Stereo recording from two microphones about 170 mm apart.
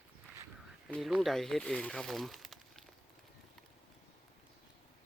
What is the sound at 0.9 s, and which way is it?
Speech, centre (ahead or behind).